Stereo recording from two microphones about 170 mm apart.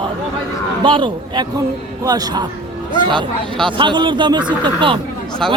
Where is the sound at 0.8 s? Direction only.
30° right (ahead or behind).